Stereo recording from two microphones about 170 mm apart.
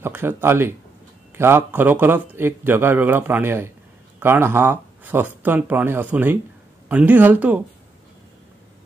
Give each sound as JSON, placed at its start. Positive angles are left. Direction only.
{"t": 0.0, "sound": "a man's voice", "side_deg": -15}